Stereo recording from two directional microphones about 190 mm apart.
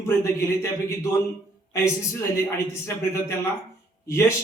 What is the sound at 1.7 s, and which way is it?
A man's voice, 15° left (ahead or behind).